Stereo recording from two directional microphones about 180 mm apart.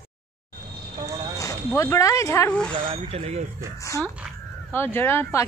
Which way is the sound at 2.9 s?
35° right (ahead or behind).